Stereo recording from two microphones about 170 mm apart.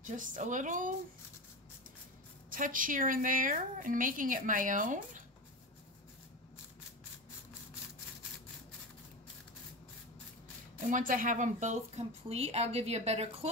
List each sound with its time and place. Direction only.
0.0 s a woman's voice: 50° right (ahead or behind)
2.5 s a woman's voice: 55° right (ahead or behind)
10.9 s speech: 50° right (ahead or behind)